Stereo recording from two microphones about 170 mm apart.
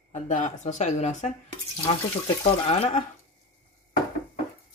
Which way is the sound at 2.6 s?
40° left (ahead or behind).